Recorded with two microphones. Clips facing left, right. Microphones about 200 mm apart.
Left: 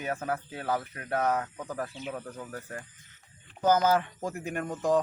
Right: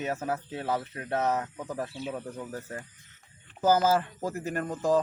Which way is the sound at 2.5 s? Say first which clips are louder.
Right 2 dB; 25° right (ahead or behind).